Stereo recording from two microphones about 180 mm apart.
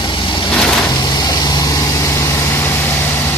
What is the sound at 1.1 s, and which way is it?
Vehicle, 20° left (ahead or behind).